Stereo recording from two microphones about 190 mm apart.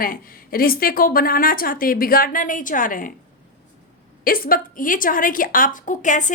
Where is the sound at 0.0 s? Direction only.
50° left (ahead or behind).